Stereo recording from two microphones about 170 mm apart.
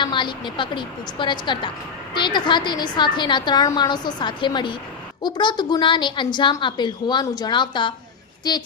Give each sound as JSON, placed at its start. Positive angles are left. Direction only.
{"t": 0.0, "sound": "a woman's voice", "side_deg": 30}